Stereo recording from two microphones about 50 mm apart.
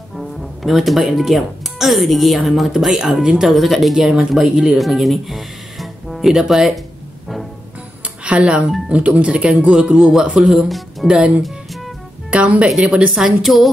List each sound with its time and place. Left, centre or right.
0.1 s speech: centre
4.7 s music: centre
6.3 s speech: centre
8.2 s speech: right
10.4 s speech: centre
11.1 s a woman's voice: centre
13.1 s speech: centre